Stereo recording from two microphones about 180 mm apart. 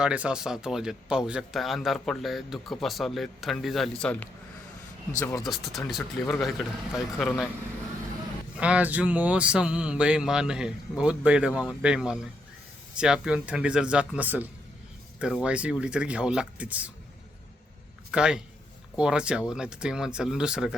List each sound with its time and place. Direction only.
0.0 s a man's voice: 5° right (ahead or behind)
5.4 s a man's voice: centre (ahead or behind)
6.0 s speech: 10° left (ahead or behind)
6.4 s a man's voice: centre (ahead or behind)
8.5 s a man's voice: 5° right (ahead or behind)
18.1 s a man's voice: 5° right (ahead or behind)